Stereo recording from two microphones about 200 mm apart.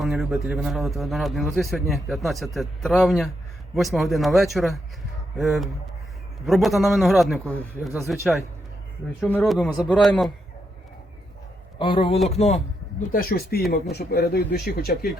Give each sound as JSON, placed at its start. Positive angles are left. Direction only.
{"t": 0.0, "sound": "a man's voice", "side_deg": -5}
{"t": 11.8, "sound": "a man's voice", "side_deg": 25}
{"t": 13.1, "sound": "speech", "side_deg": 45}